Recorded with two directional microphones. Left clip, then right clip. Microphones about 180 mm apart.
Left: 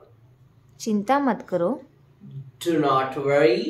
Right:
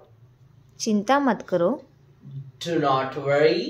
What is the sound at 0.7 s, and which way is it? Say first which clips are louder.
Speech: right 1 dB; 5° right (ahead or behind).